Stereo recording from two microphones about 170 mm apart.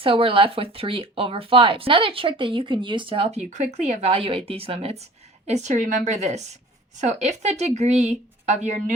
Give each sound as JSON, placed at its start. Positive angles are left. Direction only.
{"t": 0.0, "sound": "a woman's voice", "side_deg": -30}